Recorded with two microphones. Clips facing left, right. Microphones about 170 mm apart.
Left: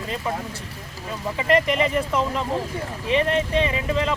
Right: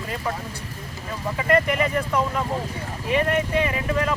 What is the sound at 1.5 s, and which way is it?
Speech, 20° left (ahead or behind).